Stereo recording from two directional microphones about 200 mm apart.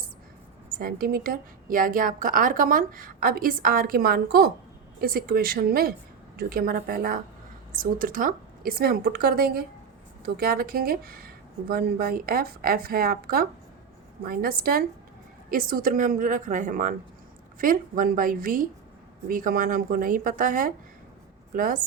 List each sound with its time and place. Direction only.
0.8 s a woman's voice: 50° right (ahead or behind)